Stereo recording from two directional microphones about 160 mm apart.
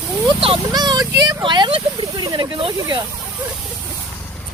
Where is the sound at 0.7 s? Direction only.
25° right (ahead or behind).